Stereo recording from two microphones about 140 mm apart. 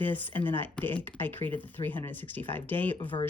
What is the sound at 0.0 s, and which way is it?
Speech, 15° left (ahead or behind).